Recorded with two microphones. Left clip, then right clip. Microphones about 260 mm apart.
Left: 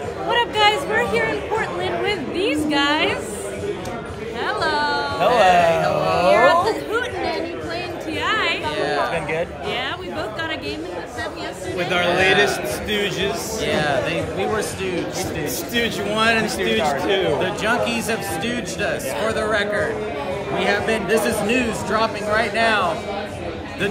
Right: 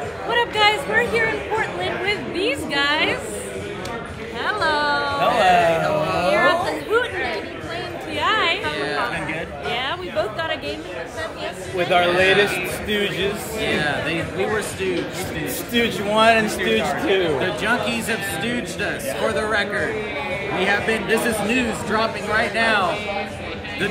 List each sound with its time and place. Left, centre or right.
0.3 s a sound: centre
4.5 s music: centre
5.3 s a sound: centre
8.2 s chatter: centre
8.6 s chatter: centre
9.7 s chatter: centre
11.8 s a man's voice: centre
13.6 s speech: centre
15.7 s a man's voice: centre
17.4 s speech: centre